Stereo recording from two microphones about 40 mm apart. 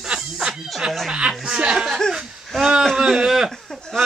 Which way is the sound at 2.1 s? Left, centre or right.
Centre.